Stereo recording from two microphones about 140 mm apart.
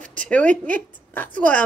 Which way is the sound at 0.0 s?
65° right (ahead or behind).